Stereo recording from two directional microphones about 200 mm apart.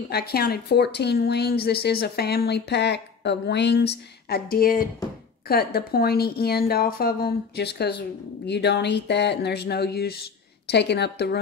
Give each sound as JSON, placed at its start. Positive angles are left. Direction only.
{"t": 0.1, "sound": "a woman's voice", "side_deg": 50}